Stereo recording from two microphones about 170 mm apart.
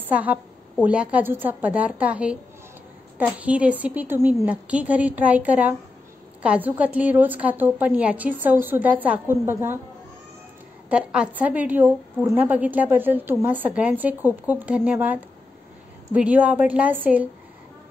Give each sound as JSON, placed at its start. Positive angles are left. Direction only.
{"t": 0.0, "sound": "a woman's voice", "side_deg": -10}
{"t": 10.9, "sound": "a woman's voice", "side_deg": -5}